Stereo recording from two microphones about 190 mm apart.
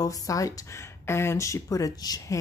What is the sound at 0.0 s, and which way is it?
Speech, 20° left (ahead or behind).